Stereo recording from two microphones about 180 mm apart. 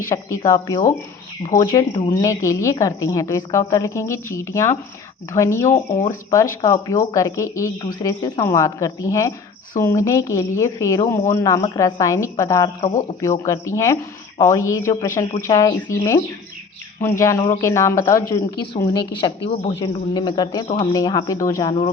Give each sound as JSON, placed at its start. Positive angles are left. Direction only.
{"t": 0.1, "sound": "a woman's voice", "side_deg": 15}